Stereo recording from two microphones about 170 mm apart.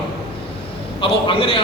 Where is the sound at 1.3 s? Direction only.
30° left (ahead or behind).